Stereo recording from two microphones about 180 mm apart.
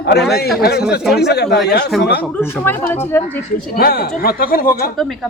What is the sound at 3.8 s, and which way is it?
Speech, 55° left (ahead or behind).